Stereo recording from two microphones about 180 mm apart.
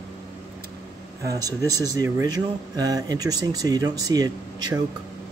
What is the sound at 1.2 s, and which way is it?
Speech, 20° right (ahead or behind).